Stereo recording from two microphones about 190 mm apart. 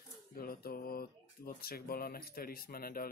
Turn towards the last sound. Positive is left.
turn(degrees=50)  # may be behind; listen again after turning